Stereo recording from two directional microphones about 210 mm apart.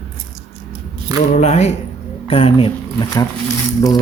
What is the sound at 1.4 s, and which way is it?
Speech, 30° left (ahead or behind).